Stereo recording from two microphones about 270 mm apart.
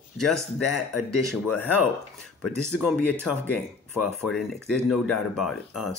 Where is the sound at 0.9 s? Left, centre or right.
Centre.